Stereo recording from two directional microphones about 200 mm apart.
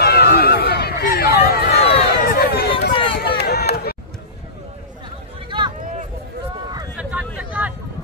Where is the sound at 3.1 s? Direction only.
55° left (ahead or behind).